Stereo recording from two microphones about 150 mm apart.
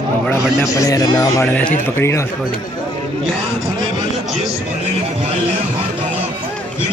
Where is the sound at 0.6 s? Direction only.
20° left (ahead or behind).